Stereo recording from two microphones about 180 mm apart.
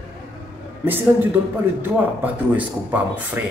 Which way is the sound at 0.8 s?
10° right (ahead or behind).